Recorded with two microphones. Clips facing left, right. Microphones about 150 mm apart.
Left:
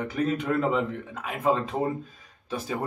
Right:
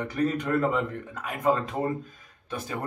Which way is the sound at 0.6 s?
20° left (ahead or behind).